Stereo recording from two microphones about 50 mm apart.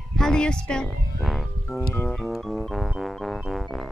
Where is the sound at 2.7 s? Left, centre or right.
Centre.